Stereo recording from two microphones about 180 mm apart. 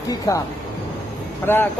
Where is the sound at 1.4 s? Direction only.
10° left (ahead or behind).